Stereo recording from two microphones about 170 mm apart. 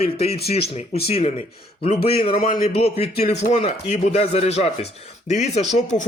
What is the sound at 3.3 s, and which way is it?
Speech, 40° left (ahead or behind).